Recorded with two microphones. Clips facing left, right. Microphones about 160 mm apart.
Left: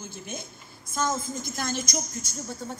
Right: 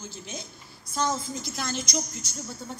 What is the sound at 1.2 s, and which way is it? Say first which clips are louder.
Speech: left 1 dB; 50° left (ahead or behind).